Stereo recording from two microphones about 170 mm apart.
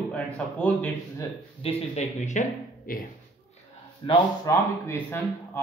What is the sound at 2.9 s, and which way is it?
Speech, 55° left (ahead or behind).